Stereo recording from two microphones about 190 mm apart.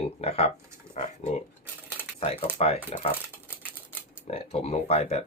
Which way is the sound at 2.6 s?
30° left (ahead or behind).